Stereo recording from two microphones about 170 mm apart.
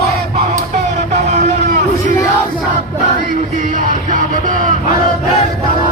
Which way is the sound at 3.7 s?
50° right (ahead or behind).